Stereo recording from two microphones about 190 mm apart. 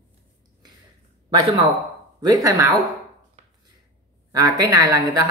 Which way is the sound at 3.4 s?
40° right (ahead or behind).